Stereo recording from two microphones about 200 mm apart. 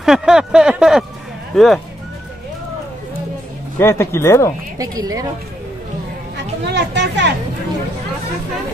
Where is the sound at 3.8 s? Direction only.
10° left (ahead or behind).